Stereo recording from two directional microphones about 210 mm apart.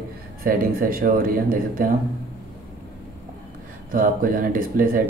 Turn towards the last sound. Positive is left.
turn(degrees=-40)  # may be behind; listen again after turning